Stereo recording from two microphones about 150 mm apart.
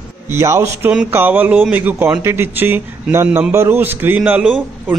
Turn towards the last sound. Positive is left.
turn(degrees=-10)  # may be behind; listen again after turning